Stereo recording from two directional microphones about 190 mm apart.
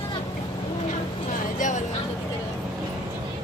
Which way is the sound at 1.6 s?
40° left (ahead or behind).